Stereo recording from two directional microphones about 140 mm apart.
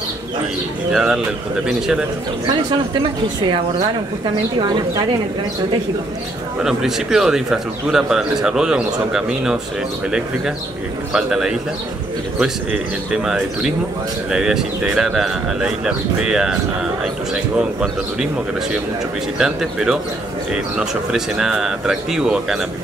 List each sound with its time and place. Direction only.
0.9 s speech: 5° right (ahead or behind)
2.4 s speech: 35° right (ahead or behind)
4.6 s speech: 30° right (ahead or behind)
6.6 s speech: 5° right (ahead or behind)
11.1 s speech: 5° right (ahead or behind)
13.1 s speech: 5° right (ahead or behind)
19.3 s speech: 5° right (ahead or behind)